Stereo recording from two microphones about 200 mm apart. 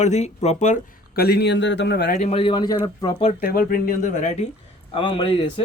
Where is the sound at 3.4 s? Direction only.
45° left (ahead or behind).